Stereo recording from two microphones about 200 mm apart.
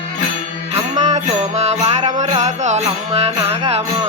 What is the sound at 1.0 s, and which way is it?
Music, 35° right (ahead or behind).